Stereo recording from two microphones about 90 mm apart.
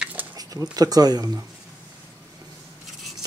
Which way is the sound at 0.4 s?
45° right (ahead or behind).